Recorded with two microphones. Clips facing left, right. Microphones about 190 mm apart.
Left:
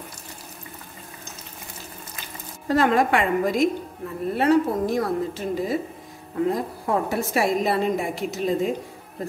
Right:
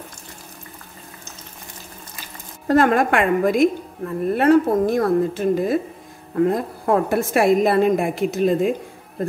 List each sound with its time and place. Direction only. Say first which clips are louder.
2.7 s a woman's voice: right 3 dB; 50° right (ahead or behind)